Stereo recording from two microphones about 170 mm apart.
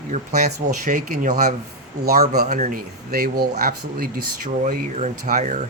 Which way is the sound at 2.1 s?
65° right (ahead or behind).